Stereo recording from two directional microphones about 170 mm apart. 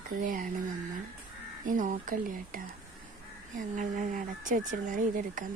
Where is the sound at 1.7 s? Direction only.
50° right (ahead or behind).